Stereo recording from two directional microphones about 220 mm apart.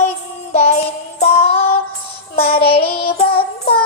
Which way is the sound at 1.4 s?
25° left (ahead or behind).